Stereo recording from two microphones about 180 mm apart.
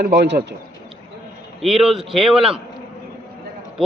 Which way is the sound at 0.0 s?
60° right (ahead or behind).